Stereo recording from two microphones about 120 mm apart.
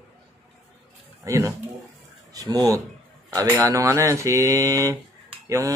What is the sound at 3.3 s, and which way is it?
Mantra, 25° right (ahead or behind).